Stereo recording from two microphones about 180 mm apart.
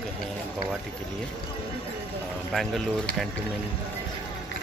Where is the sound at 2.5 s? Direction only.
Centre (ahead or behind).